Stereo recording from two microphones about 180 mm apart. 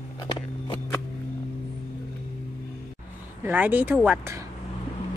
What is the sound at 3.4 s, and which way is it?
Speech, 10° right (ahead or behind).